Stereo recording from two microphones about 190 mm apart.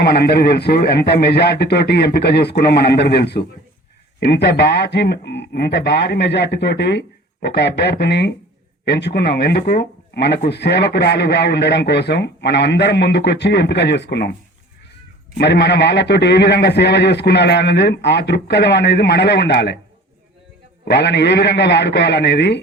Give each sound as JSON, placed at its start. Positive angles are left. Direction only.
{"t": 0.0, "sound": "speech", "side_deg": 60}
{"t": 15.4, "sound": "speech", "side_deg": 60}
{"t": 20.8, "sound": "speech", "side_deg": 60}